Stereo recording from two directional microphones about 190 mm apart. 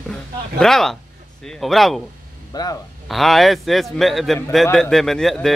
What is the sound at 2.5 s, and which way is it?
Speech, 20° left (ahead or behind).